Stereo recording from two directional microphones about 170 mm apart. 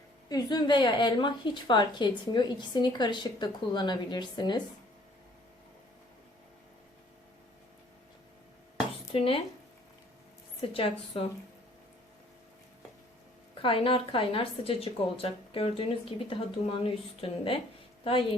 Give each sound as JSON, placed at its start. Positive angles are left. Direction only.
{"t": 0.3, "sound": "a woman's voice", "side_deg": 25}
{"t": 9.1, "sound": "a woman's voice", "side_deg": 30}
{"t": 10.6, "sound": "a woman's voice", "side_deg": 35}
{"t": 13.6, "sound": "a woman's voice", "side_deg": 30}